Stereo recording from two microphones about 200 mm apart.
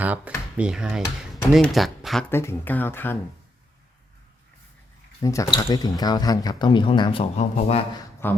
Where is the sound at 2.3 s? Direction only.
10° left (ahead or behind).